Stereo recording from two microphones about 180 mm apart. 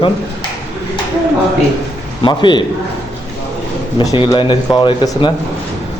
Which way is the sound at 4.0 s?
25° left (ahead or behind).